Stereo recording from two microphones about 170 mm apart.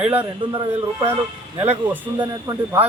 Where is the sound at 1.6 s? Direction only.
10° right (ahead or behind).